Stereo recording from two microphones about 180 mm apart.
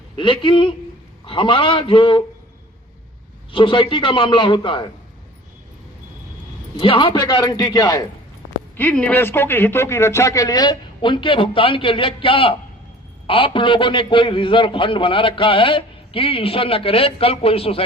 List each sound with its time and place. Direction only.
0.2 s a man's voice: 25° left (ahead or behind)
3.5 s a man's voice: 25° left (ahead or behind)
6.7 s a man's voice: 30° left (ahead or behind)
8.7 s a man's voice: 10° left (ahead or behind); by 17.8 s 30° left (ahead or behind)